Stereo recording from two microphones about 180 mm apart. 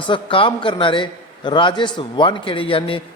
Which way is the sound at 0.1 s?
30° left (ahead or behind).